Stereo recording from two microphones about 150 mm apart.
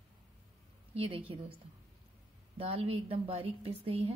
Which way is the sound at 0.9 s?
40° right (ahead or behind).